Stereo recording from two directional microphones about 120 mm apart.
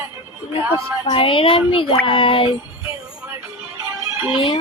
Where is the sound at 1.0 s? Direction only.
45° left (ahead or behind).